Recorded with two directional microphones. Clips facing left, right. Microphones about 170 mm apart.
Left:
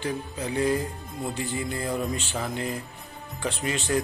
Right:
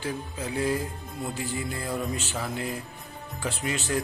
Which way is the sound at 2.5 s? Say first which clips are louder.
Left 1 dB; centre (ahead or behind).